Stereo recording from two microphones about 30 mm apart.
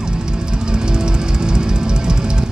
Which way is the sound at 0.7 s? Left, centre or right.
Right.